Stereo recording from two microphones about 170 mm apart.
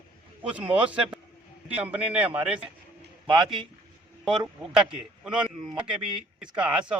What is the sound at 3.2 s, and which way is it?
Speech, 30° right (ahead or behind).